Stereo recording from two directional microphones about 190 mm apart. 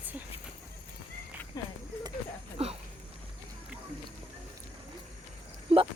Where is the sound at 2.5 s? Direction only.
30° right (ahead or behind).